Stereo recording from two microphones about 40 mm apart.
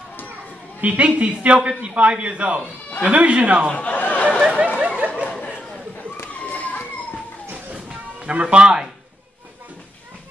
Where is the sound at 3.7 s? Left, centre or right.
Left.